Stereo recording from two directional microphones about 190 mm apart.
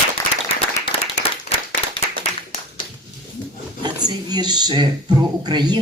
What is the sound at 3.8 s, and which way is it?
Speech, 20° right (ahead or behind).